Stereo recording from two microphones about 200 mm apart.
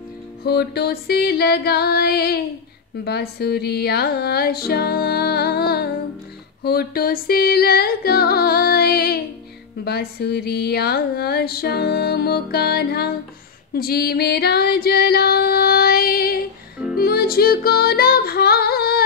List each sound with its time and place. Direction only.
0.4 s music: 50° left (ahead or behind)